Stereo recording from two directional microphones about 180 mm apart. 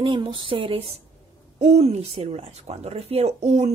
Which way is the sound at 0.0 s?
30° right (ahead or behind).